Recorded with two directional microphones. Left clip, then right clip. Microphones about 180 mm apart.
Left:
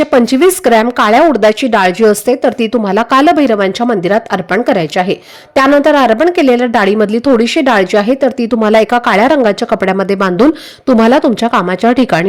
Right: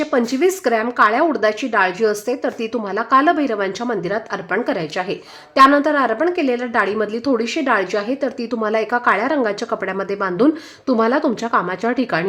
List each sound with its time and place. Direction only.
0.0 s a woman's voice: 45° left (ahead or behind)